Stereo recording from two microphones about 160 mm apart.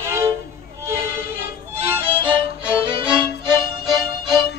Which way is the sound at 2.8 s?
30° right (ahead or behind).